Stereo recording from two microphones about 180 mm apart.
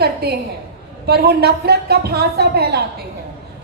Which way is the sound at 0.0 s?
65° right (ahead or behind).